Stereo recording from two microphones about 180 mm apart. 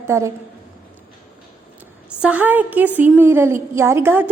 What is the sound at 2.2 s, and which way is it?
A woman's voice, 10° right (ahead or behind).